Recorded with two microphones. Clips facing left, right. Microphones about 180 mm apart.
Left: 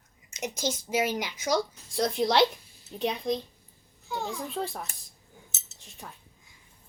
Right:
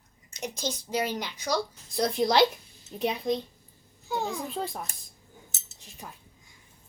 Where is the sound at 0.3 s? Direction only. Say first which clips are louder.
Left 2 dB; 20° left (ahead or behind).